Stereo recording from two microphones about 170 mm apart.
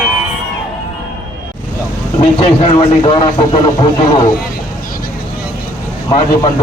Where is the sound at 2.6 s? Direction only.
35° left (ahead or behind).